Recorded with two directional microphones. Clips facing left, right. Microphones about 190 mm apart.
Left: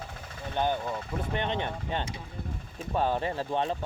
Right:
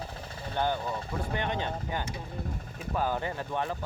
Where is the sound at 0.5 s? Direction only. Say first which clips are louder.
Left 1 dB; 20° left (ahead or behind).